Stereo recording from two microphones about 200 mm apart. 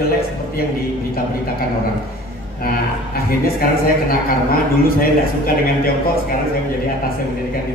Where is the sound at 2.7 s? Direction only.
50° left (ahead or behind).